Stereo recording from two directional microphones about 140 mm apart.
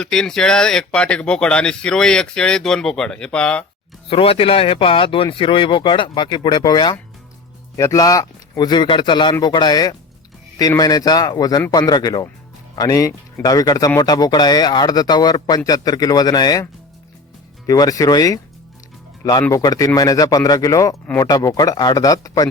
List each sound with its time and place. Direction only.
0.0 s speech: 5° left (ahead or behind)
4.1 s speech: 40° left (ahead or behind)
17.7 s speech: 25° left (ahead or behind)